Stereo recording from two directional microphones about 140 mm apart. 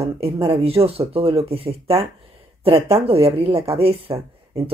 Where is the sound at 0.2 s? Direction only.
45° right (ahead or behind).